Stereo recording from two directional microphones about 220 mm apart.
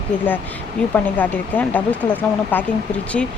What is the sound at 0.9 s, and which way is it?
Speech, 10° left (ahead or behind).